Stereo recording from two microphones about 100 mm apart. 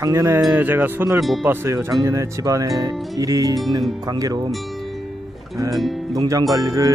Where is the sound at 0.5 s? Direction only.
20° right (ahead or behind).